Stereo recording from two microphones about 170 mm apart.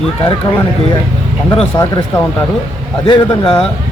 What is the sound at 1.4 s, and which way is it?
Speech, 25° left (ahead or behind).